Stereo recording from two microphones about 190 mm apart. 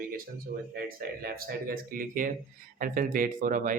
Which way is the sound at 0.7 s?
55° right (ahead or behind).